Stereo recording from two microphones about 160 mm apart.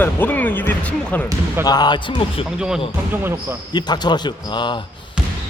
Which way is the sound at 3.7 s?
25° left (ahead or behind).